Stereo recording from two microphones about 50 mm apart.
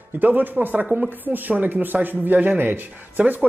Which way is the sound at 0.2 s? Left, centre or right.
Right.